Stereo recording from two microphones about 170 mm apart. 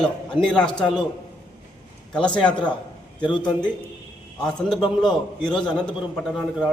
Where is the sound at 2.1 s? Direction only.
5° left (ahead or behind).